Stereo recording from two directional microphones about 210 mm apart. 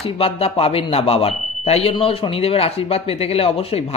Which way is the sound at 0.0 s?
30° left (ahead or behind).